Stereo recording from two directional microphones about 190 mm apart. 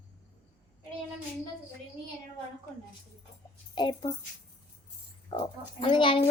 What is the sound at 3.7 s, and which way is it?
Speech, 25° left (ahead or behind).